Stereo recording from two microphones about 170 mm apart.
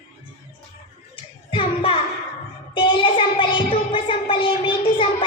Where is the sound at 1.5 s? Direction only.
30° left (ahead or behind).